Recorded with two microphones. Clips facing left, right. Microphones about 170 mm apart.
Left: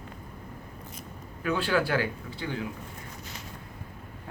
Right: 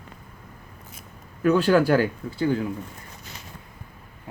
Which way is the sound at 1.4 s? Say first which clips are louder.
Right 8 dB; 45° right (ahead or behind).